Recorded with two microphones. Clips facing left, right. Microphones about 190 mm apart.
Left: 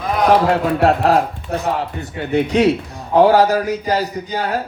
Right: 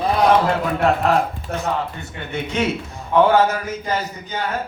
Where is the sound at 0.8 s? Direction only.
35° left (ahead or behind).